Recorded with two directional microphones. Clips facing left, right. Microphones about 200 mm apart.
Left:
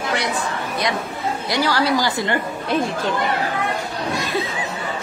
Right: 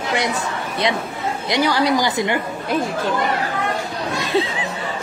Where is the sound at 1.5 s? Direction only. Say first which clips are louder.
Right 2 dB; 20° right (ahead or behind).